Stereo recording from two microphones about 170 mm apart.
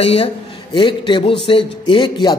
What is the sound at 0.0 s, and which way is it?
A man's voice, 35° left (ahead or behind).